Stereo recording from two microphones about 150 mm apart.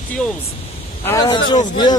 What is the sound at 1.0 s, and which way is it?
Speech, 25° left (ahead or behind).